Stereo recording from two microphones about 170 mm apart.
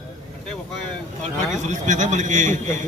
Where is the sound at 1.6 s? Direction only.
45° right (ahead or behind).